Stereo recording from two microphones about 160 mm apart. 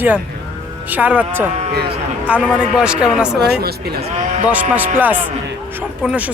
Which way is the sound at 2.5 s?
5° right (ahead or behind).